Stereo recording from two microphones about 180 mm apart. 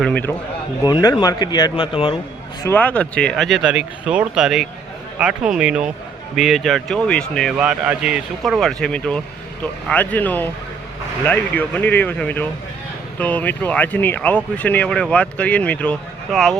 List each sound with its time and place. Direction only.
0.0 s speech: 5° left (ahead or behind)
0.9 s speech: 20° left (ahead or behind)
2.6 s speech: 10° left (ahead or behind)